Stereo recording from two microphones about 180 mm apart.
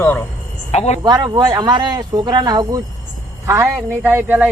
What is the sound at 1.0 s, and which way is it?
Speech, 20° right (ahead or behind).